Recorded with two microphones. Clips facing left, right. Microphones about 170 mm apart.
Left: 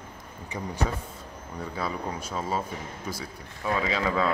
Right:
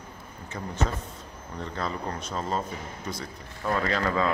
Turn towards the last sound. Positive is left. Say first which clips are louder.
# even
turn(degrees=5)  # may be behind; listen again after turning